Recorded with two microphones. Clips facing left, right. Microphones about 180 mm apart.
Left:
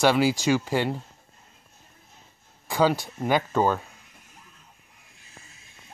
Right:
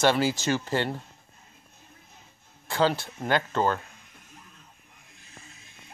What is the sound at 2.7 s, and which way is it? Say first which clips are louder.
Speech: left 2 dB; 10° left (ahead or behind).